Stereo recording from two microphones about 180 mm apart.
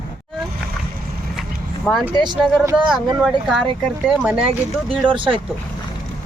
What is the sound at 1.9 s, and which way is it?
Speech, 5° left (ahead or behind).